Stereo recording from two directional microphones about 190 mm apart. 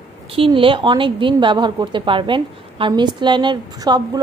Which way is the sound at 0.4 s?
25° right (ahead or behind).